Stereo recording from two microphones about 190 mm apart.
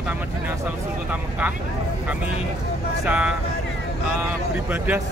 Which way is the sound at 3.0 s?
5° right (ahead or behind).